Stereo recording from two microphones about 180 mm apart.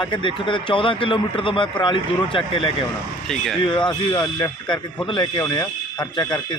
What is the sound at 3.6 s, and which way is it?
Speech, 25° left (ahead or behind).